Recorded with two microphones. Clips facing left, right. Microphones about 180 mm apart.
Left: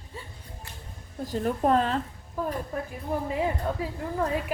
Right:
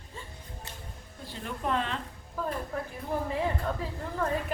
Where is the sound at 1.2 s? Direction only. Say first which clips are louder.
Left 9 dB; 40° left (ahead or behind).